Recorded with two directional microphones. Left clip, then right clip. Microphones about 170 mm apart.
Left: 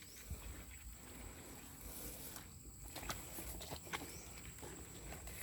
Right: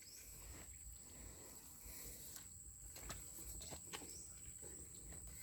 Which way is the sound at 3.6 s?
25° left (ahead or behind).